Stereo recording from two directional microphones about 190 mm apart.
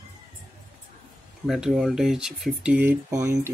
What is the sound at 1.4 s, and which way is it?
Speech, 5° right (ahead or behind).